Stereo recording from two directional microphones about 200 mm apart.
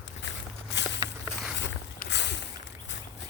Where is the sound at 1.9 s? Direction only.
60° left (ahead or behind).